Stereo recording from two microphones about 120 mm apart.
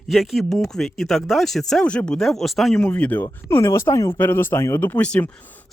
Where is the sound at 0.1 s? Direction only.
Centre (ahead or behind).